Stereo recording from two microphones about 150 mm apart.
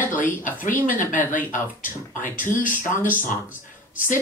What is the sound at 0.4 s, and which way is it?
A woman's voice, 60° left (ahead or behind).